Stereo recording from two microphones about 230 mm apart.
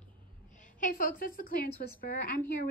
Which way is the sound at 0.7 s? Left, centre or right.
Left.